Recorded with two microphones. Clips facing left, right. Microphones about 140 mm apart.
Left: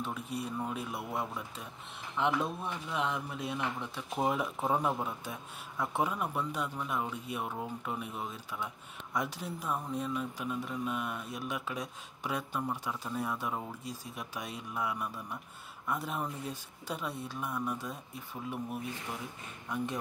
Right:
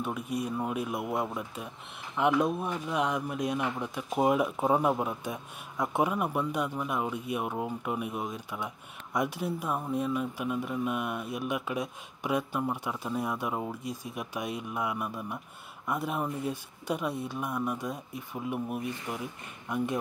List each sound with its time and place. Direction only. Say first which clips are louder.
0.0 s speech: right 5 dB; 15° right (ahead or behind)